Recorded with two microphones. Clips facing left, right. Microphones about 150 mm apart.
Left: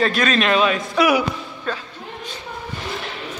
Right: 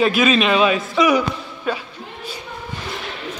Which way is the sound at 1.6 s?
10° right (ahead or behind).